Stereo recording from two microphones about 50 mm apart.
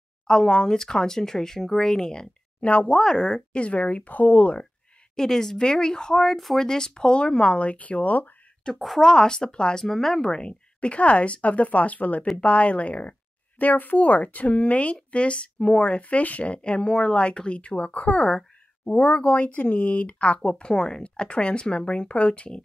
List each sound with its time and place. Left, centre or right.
0.3 s speech: centre
2.6 s speech: left
3.0 s speech: centre; by 4.6 s left
5.1 s speech: centre; by 8.3 s left
8.7 s a woman's voice: centre
9.0 s speech: centre
9.8 s speech: centre; by 22.6 s left